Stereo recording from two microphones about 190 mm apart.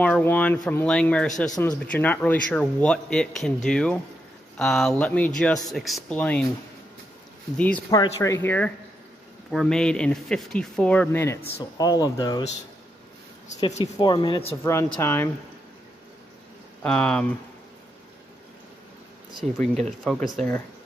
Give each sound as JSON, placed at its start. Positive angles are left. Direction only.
{"t": 0.0, "sound": "speech", "side_deg": 10}
{"t": 7.5, "sound": "speech", "side_deg": 10}
{"t": 13.9, "sound": "speech", "side_deg": 25}
{"t": 14.6, "sound": "speech", "side_deg": 15}
{"t": 16.8, "sound": "speech", "side_deg": 5}
{"t": 20.1, "sound": "speech", "side_deg": 0}